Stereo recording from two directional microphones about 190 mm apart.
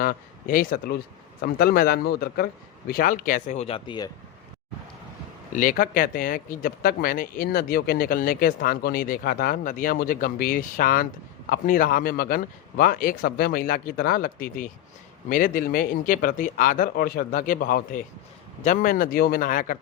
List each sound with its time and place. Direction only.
0.0 s speech: 50° left (ahead or behind); by 4.1 s 25° left (ahead or behind)
5.5 s speech: 45° left (ahead or behind)